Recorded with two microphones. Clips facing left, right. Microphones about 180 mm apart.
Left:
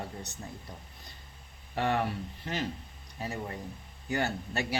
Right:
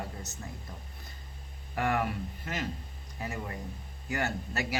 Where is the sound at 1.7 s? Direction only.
30° left (ahead or behind).